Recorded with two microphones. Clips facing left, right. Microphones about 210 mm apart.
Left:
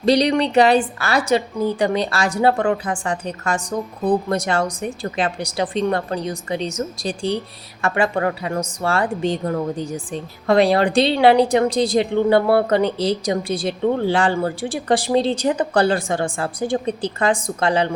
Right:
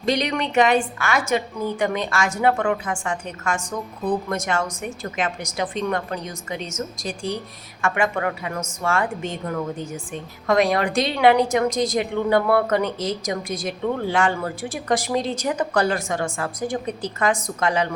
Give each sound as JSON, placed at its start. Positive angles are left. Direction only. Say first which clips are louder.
{"t": 0.0, "sound": "a woman's voice", "louder": "left 7 dB", "side_deg": 35}